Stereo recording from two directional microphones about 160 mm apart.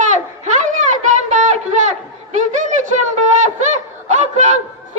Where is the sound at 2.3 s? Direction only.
50° right (ahead or behind).